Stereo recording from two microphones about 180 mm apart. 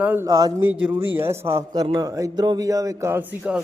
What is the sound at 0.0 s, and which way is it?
A man's voice, 10° right (ahead or behind).